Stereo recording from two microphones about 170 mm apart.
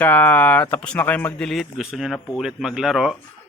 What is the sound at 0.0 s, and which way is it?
Speech, 10° left (ahead or behind).